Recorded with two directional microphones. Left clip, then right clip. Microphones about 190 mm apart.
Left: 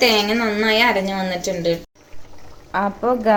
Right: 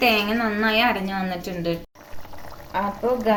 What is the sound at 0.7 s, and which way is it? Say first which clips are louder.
Speech: left 4 dB; 45° left (ahead or behind).